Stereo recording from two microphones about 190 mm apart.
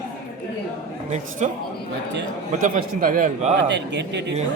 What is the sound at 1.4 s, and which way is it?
Speech, 35° right (ahead or behind).